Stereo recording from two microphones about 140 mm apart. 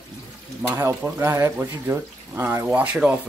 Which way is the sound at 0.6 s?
15° right (ahead or behind).